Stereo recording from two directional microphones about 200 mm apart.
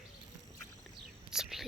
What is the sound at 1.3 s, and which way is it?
Whispering, centre (ahead or behind).